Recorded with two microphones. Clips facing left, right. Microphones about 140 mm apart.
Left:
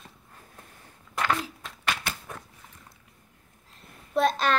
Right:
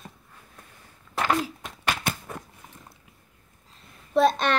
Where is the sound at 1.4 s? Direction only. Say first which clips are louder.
Right 4 dB; 40° right (ahead or behind).